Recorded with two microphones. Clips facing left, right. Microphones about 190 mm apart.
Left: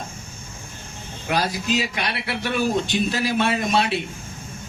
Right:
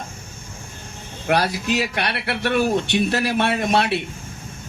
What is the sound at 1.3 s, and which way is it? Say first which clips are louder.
Speech: right 3 dB; 65° right (ahead or behind).